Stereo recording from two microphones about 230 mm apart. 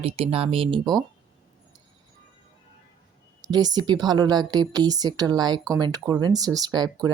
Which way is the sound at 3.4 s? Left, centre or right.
Centre.